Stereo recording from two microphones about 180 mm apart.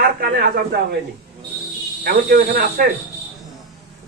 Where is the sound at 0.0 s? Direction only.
55° right (ahead or behind).